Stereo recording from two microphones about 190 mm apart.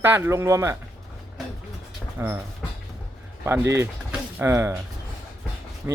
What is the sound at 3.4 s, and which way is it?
Speech, 15° right (ahead or behind).